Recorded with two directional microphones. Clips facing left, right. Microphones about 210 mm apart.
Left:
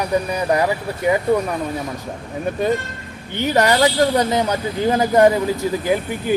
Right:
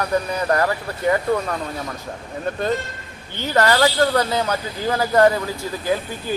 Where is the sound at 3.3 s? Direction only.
15° left (ahead or behind).